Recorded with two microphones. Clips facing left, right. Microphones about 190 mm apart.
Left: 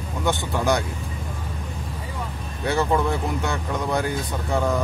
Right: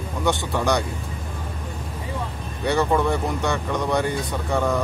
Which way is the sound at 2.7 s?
Centre (ahead or behind).